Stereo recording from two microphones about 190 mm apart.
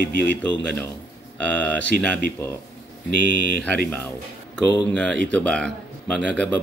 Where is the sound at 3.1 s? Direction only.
70° right (ahead or behind).